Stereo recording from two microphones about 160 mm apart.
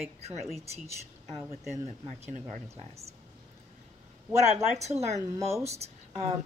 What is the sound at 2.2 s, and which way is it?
Speech, 45° right (ahead or behind).